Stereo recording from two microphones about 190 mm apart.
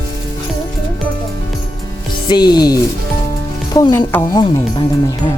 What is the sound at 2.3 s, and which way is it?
Speech, 20° left (ahead or behind).